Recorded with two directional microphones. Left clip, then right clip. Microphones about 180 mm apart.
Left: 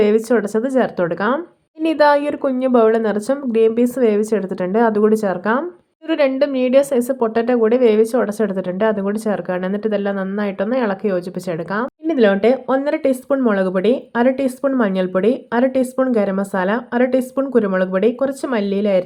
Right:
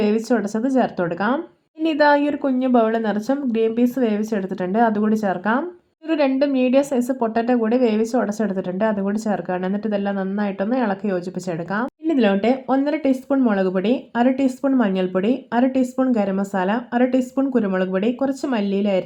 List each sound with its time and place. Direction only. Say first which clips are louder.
0.0 s speech: left 5 dB; 20° left (ahead or behind)